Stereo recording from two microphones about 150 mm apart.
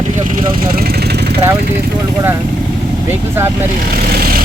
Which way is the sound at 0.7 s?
90° right.